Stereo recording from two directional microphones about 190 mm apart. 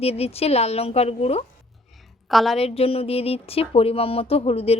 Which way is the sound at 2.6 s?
30° left (ahead or behind).